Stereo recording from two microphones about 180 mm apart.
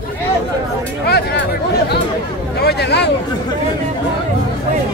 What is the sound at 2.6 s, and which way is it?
Speech, 65° left (ahead or behind).